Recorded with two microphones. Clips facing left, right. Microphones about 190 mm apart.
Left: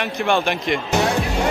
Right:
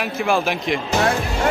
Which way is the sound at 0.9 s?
Centre (ahead or behind).